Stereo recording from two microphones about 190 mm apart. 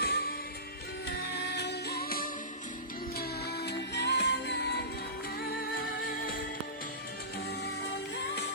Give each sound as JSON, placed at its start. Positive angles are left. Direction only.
{"t": 0.0, "sound": "music", "side_deg": 55}
{"t": 7.6, "sound": "music", "side_deg": 60}